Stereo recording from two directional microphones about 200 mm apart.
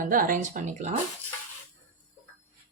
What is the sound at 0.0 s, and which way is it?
Speech, 45° right (ahead or behind).